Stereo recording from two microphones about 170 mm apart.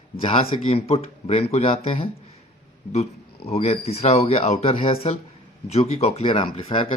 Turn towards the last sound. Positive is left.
turn(degrees=35)  # may be behind; listen again after turning